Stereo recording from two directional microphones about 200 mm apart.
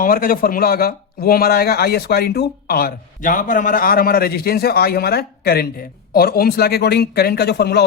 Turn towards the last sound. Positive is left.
turn(degrees=55)  # may be behind; listen again after turning